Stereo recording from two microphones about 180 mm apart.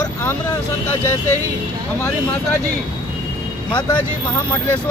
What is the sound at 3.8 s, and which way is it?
Speech, 25° left (ahead or behind).